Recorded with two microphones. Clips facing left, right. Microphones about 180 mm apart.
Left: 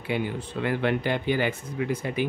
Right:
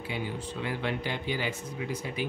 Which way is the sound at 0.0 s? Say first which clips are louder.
Left 6 dB; 60° left (ahead or behind).